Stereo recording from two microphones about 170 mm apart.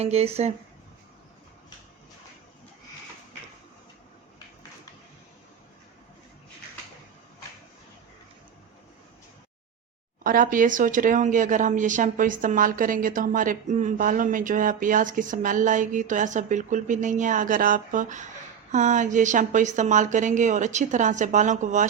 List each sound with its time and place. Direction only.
0.0 s speech: 35° right (ahead or behind)
10.2 s a woman's voice: 55° right (ahead or behind)